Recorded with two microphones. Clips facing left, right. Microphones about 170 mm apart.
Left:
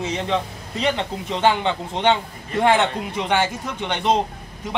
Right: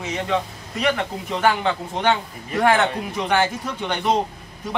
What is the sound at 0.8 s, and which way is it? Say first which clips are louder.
A man's voice: even; 25° left (ahead or behind).